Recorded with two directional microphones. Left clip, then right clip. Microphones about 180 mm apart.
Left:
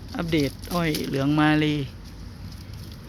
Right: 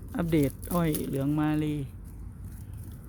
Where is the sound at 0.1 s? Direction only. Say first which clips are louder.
Left 2 dB; 10° right (ahead or behind); by 1.9 s 5° left (ahead or behind).